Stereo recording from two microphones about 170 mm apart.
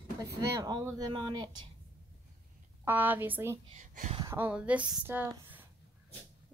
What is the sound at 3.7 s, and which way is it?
Speech, 40° right (ahead or behind).